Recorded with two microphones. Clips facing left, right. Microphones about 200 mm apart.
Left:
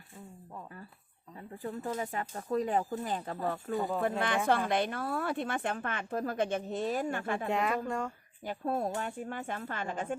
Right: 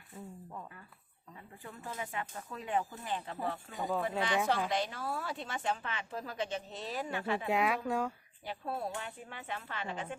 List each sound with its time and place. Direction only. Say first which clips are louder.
1.4 s speech: left 10 dB; 40° left (ahead or behind)
7.5 s speech: even; 5° right (ahead or behind)
8.4 s speech: left 6 dB; 45° left (ahead or behind)